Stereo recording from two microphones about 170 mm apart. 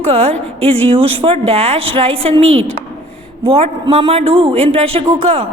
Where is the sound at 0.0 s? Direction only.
35° right (ahead or behind).